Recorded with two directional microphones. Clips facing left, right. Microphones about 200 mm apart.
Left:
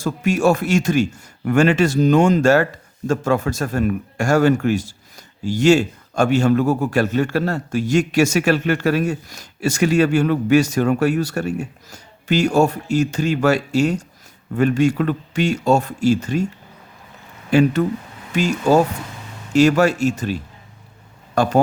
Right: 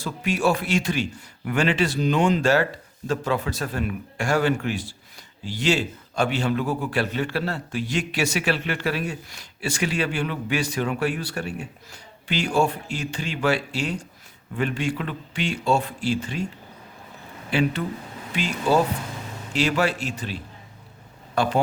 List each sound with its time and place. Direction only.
0.0 s a man's voice: 45° left (ahead or behind)
17.5 s a man's voice: 45° left (ahead or behind)